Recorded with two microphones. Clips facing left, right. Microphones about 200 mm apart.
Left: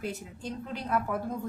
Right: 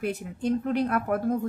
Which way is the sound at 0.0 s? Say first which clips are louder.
Right 8 dB; 60° right (ahead or behind).